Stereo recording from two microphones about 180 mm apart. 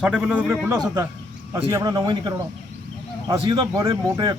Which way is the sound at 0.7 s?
20° right (ahead or behind).